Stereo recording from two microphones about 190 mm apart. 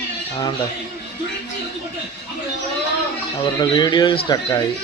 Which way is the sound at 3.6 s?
25° left (ahead or behind).